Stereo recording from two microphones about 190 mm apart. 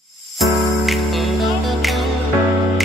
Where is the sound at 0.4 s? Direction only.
Centre (ahead or behind).